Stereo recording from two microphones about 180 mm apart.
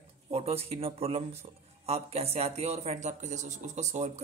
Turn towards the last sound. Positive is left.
turn(degrees=-40)  # may be behind; listen again after turning